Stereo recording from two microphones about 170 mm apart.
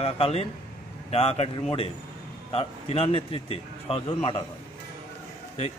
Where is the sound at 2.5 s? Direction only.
35° left (ahead or behind).